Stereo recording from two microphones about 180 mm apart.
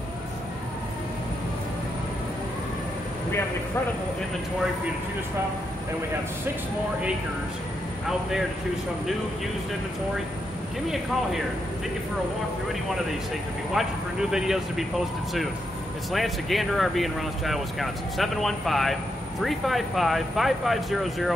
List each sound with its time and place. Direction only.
13.8 s speech: centre (ahead or behind)
16.1 s speech: centre (ahead or behind)